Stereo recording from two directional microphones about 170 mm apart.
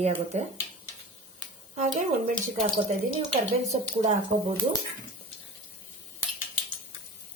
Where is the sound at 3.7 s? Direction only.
45° right (ahead or behind).